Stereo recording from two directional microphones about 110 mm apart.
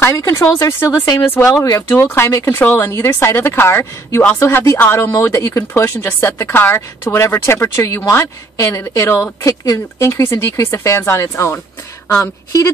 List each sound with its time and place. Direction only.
0.0 s speech: 25° left (ahead or behind)